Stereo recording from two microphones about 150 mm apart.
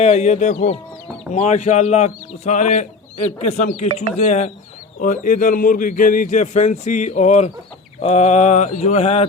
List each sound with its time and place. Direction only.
0.0 s speech: 50° left (ahead or behind)